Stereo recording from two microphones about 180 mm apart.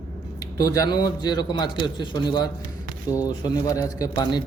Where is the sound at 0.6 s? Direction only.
20° left (ahead or behind).